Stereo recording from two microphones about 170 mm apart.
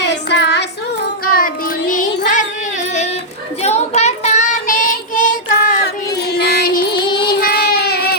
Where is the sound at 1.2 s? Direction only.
60° left (ahead or behind).